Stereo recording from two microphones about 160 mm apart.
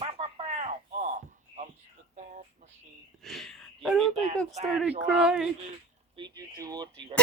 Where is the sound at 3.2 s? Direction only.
Centre (ahead or behind).